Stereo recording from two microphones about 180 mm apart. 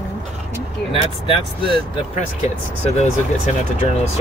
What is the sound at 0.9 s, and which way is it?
Speech, 30° left (ahead or behind).